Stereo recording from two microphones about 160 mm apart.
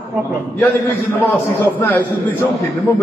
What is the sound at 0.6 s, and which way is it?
A man's voice, 15° left (ahead or behind).